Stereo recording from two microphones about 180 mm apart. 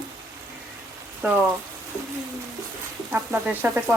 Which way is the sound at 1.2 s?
10° right (ahead or behind).